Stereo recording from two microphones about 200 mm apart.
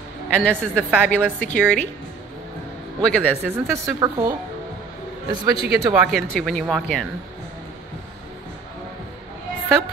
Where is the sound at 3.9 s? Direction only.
20° right (ahead or behind).